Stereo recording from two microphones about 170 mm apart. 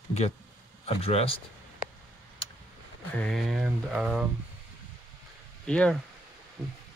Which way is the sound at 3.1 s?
5° left (ahead or behind).